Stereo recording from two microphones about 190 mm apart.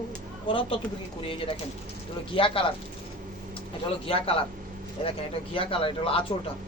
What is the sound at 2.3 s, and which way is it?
Speech, 30° left (ahead or behind).